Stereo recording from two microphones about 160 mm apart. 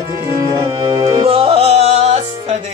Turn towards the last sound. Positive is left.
turn(degrees=-40)  # may be behind; listen again after turning